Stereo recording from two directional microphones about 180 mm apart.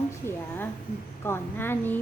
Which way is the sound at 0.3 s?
10° left (ahead or behind).